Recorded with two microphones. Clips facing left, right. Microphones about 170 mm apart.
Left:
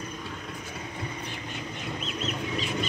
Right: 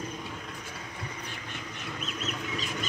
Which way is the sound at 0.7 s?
25° left (ahead or behind).